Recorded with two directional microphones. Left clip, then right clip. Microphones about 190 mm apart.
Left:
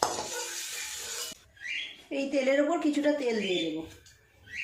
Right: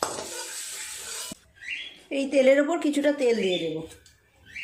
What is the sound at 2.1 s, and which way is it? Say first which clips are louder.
A woman's voice: right 8 dB; 50° right (ahead or behind).